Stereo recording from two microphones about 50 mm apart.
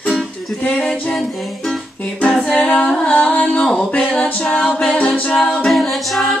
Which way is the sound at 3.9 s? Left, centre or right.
Left.